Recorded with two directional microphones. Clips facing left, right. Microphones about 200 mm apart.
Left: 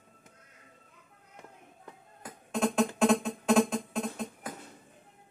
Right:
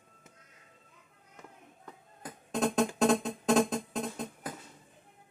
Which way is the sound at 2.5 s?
35° right (ahead or behind).